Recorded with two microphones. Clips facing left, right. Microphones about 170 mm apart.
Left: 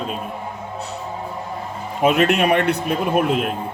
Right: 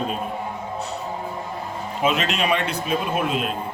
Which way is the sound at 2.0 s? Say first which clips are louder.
Left 6 dB; 55° left (ahead or behind).